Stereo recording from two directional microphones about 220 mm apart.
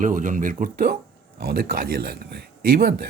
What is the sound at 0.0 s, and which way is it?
Speech, 35° right (ahead or behind).